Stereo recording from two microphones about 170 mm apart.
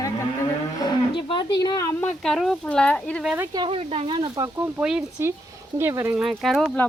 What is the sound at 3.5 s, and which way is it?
Speech, 30° right (ahead or behind).